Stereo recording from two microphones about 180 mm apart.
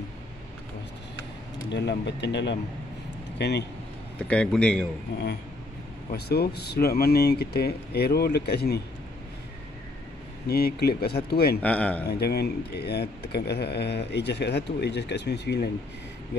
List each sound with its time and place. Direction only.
1.7 s speech: 70° left (ahead or behind)
4.2 s a man's voice: 5° left (ahead or behind)
6.1 s speech: 65° left (ahead or behind)
10.5 s speech: 60° left (ahead or behind)
11.6 s speech: 10° left (ahead or behind)
12.1 s speech: 60° left (ahead or behind)